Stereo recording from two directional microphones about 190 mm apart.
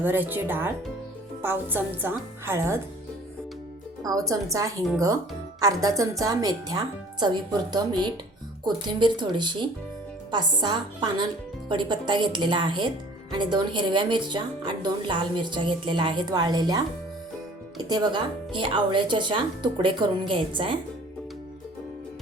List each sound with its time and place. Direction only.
0.0 s a woman's voice: 10° right (ahead or behind)
4.0 s a woman's voice: 20° right (ahead or behind)
17.8 s a woman's voice: 20° right (ahead or behind)